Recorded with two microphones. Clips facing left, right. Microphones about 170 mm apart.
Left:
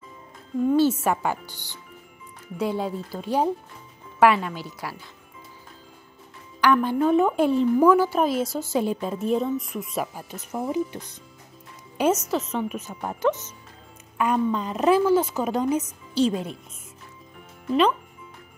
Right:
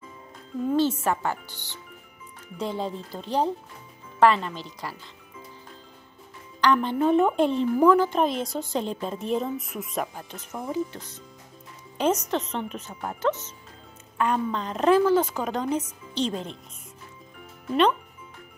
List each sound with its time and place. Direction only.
0.7 s a woman's voice: 10° left (ahead or behind)
6.6 s a woman's voice: 5° left (ahead or behind)